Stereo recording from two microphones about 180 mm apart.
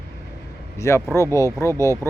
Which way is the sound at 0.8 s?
15° left (ahead or behind).